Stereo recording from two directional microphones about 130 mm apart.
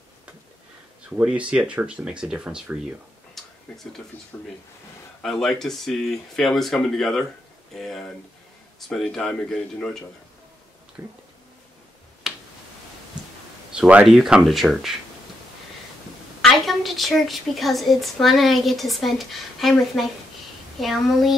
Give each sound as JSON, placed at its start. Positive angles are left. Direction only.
{"t": 1.1, "sound": "speech", "side_deg": -10}
{"t": 3.3, "sound": "a sound", "side_deg": 0}
{"t": 5.2, "sound": "a woman's voice", "side_deg": 5}
{"t": 11.0, "sound": "speech", "side_deg": -15}
{"t": 12.2, "sound": "finger snapping", "side_deg": 0}
{"t": 13.7, "sound": "a woman's voice", "side_deg": -10}
{"t": 16.3, "sound": "a woman's voice", "side_deg": 0}